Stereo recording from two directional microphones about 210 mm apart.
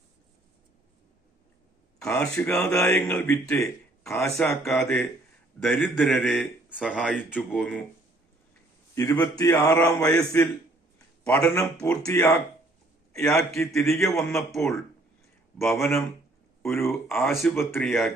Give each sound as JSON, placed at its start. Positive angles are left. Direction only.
{"t": 2.0, "sound": "a man's voice", "side_deg": 10}
{"t": 9.0, "sound": "a man's voice", "side_deg": 15}
{"t": 16.6, "sound": "a man's voice", "side_deg": 10}
{"t": 17.4, "sound": "a man's voice", "side_deg": 0}